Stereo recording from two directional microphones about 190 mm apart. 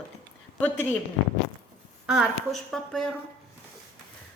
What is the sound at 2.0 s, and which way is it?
A woman's voice, centre (ahead or behind).